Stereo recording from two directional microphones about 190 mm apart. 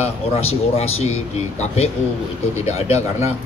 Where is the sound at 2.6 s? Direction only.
35° left (ahead or behind).